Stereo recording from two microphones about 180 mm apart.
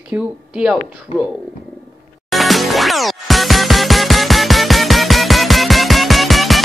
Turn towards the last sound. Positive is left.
turn(degrees=0)  # may be behind; listen again after turning